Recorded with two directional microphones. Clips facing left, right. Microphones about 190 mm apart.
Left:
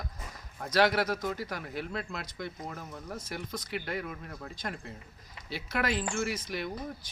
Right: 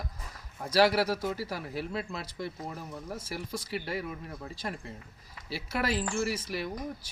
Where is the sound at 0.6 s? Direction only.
5° right (ahead or behind).